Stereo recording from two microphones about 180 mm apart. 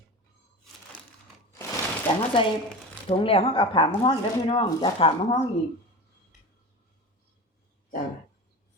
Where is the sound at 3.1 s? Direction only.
30° left (ahead or behind).